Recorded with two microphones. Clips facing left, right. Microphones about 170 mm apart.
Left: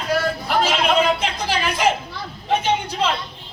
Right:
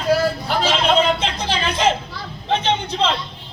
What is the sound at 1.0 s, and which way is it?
Speech, 25° right (ahead or behind).